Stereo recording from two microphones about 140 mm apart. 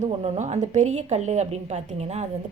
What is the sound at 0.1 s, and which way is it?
A woman's voice, 50° right (ahead or behind).